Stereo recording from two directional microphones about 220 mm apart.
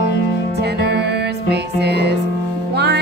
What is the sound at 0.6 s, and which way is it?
Music, 50° right (ahead or behind).